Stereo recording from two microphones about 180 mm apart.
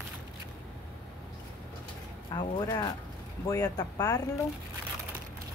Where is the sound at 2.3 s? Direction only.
25° left (ahead or behind).